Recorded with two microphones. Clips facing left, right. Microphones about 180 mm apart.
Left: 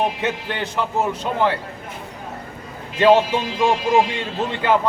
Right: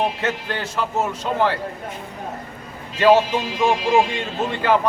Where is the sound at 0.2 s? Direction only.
15° left (ahead or behind).